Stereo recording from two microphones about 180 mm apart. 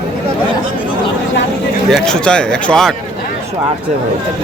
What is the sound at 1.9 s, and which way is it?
Speech, 5° left (ahead or behind).